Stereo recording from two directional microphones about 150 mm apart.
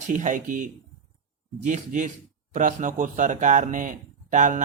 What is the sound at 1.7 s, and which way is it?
Speech, 55° right (ahead or behind).